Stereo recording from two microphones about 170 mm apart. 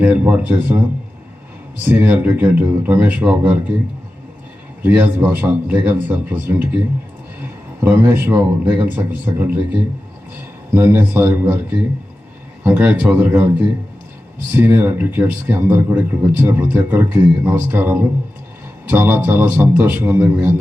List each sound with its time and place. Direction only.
0.0 s speech: 10° right (ahead or behind)
1.9 s speech: 10° right (ahead or behind)
4.8 s speech: 10° right (ahead or behind)
7.9 s speech: 15° right (ahead or behind)
9.0 s speech: 10° right (ahead or behind)
10.8 s speech: 10° right (ahead or behind)